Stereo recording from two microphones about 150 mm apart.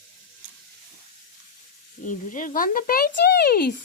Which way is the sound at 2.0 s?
60° left (ahead or behind).